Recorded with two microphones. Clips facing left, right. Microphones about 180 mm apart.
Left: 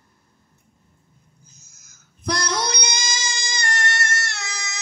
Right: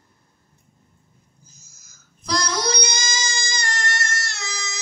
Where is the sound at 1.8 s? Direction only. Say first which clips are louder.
Left 1 dB; 60° left (ahead or behind).